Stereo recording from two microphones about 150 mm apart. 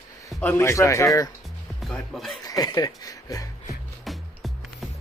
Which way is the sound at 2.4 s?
25° left (ahead or behind).